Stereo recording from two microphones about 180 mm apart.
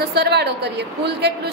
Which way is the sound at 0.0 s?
65° right (ahead or behind).